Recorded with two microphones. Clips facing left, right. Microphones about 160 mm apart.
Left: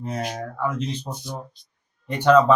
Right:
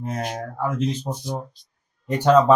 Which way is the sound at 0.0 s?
45° right (ahead or behind).